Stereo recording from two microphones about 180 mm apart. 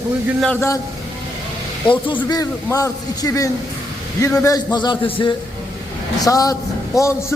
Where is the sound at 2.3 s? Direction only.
20° left (ahead or behind).